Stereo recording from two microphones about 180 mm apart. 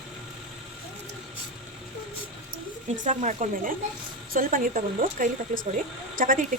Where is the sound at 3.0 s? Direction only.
45° right (ahead or behind).